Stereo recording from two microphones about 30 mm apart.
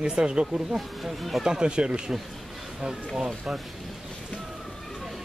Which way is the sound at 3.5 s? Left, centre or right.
Right.